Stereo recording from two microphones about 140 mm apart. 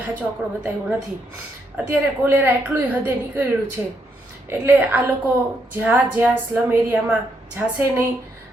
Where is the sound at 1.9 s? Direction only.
15° right (ahead or behind).